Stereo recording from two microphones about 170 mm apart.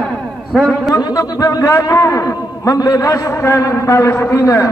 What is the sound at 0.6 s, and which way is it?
Speech, centre (ahead or behind).